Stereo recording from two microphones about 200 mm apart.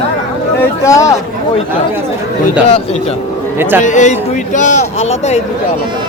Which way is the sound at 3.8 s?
35° left (ahead or behind).